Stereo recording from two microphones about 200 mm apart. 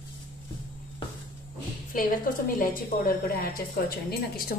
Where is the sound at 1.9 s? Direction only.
45° left (ahead or behind).